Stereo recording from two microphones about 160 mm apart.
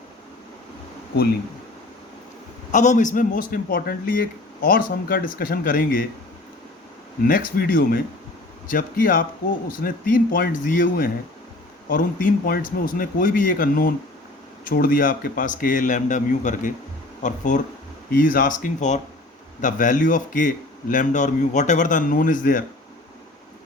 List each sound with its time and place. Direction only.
2.7 s speech: 50° left (ahead or behind)
7.3 s speech: 65° left (ahead or behind)
8.6 s a man's voice: 60° left (ahead or behind)